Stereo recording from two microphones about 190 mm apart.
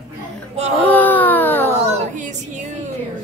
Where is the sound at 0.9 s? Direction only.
10° left (ahead or behind).